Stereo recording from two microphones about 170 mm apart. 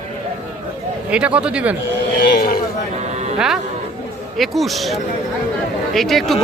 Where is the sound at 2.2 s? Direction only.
65° left (ahead or behind).